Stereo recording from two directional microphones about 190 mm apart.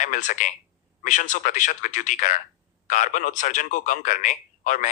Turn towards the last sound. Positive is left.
turn(degrees=40)  # may be behind; listen again after turning